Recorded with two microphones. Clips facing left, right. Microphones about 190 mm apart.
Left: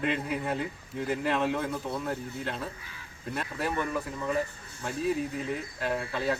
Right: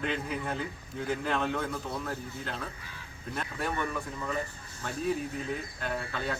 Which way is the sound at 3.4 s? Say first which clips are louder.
Left 2 dB; 5° left (ahead or behind).